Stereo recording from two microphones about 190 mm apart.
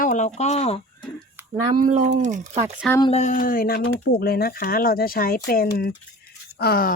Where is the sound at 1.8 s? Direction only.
40° right (ahead or behind).